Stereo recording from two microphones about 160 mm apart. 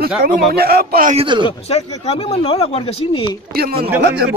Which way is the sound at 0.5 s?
75° right (ahead or behind).